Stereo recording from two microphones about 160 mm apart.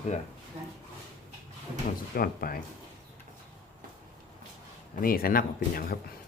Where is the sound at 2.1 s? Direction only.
65° left (ahead or behind).